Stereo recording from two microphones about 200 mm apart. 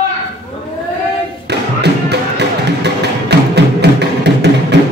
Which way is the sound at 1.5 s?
55° right (ahead or behind).